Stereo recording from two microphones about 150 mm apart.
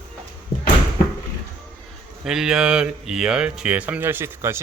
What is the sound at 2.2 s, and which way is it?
Speech, 5° right (ahead or behind).